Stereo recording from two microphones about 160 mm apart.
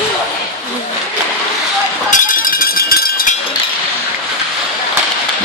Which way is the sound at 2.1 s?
60° left (ahead or behind).